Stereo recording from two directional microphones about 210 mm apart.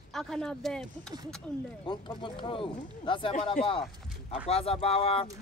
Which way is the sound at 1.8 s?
20° left (ahead or behind).